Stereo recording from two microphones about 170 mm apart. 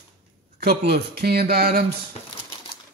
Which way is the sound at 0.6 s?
70° right (ahead or behind).